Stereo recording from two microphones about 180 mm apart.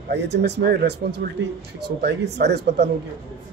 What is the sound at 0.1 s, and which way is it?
Speech, 65° right (ahead or behind).